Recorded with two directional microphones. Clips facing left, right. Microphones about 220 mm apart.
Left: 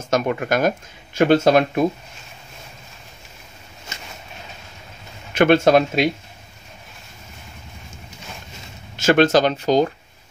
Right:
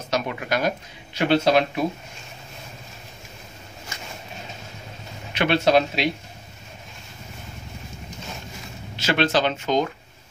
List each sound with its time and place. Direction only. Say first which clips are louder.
0.1 s speech: left 5 dB; 50° left (ahead or behind)
5.3 s speech: left 5 dB; 50° left (ahead or behind)
8.9 s speech: left 7 dB; 50° left (ahead or behind)